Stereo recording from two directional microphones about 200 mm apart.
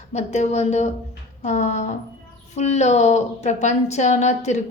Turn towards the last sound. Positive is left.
turn(degrees=35)  # may be behind; listen again after turning